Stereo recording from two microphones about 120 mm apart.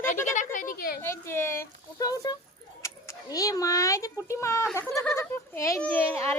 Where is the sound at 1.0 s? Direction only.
20° left (ahead or behind).